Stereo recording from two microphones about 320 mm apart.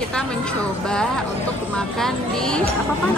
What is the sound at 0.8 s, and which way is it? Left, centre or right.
A woman's voice, centre.